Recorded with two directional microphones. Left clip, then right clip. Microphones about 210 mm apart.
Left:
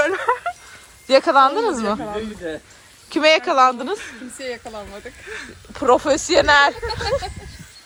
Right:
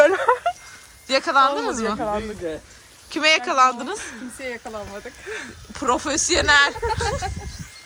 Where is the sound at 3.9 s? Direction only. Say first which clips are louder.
Left 1 dB; 55° right (ahead or behind).